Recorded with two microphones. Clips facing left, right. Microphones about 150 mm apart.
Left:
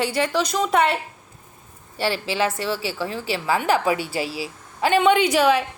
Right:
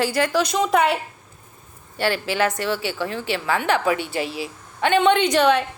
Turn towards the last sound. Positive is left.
turn(degrees=5)  # may be behind; listen again after turning